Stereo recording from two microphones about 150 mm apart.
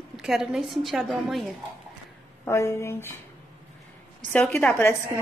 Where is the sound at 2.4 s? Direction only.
20° left (ahead or behind).